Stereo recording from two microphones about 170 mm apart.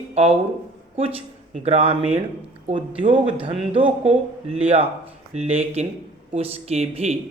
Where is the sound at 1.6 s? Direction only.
40° right (ahead or behind).